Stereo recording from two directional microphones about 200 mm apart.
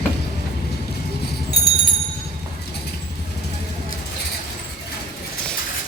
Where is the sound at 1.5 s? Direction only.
55° left (ahead or behind).